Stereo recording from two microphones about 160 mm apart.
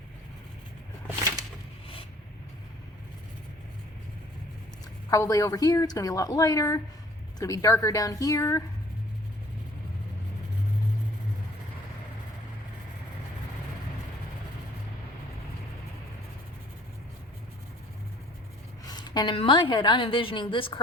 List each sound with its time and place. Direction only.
5.1 s a woman's voice: 20° left (ahead or behind)
18.9 s a woman's voice: 25° left (ahead or behind)